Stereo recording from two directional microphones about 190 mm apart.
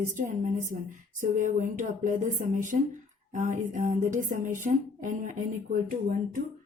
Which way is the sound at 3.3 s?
40° right (ahead or behind).